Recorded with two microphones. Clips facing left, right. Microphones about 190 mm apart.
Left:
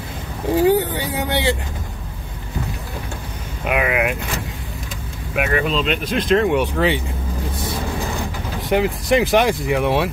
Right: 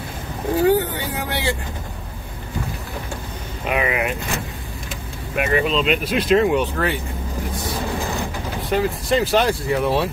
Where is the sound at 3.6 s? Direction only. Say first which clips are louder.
Left 2 dB; 5° left (ahead or behind).